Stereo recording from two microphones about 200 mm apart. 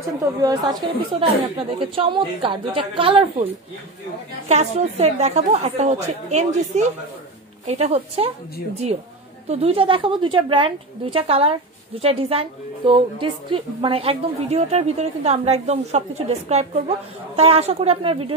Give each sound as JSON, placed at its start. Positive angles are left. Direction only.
{"t": 0.2, "sound": "a woman's voice", "side_deg": -20}
{"t": 4.5, "sound": "a woman's voice", "side_deg": -35}
{"t": 9.5, "sound": "a woman's voice", "side_deg": -30}